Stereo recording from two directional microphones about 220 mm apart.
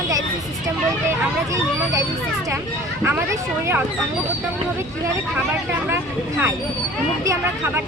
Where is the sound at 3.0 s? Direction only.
10° right (ahead or behind).